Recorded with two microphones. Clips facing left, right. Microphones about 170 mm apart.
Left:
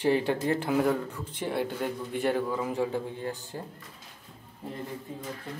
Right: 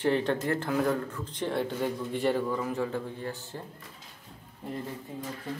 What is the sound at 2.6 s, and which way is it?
Speech, 15° left (ahead or behind).